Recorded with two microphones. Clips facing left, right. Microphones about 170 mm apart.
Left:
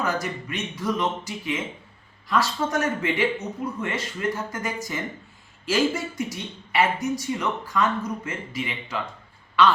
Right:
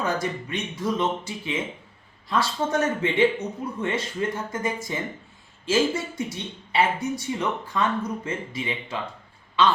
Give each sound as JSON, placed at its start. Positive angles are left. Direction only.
{"t": 0.0, "sound": "speech", "side_deg": -25}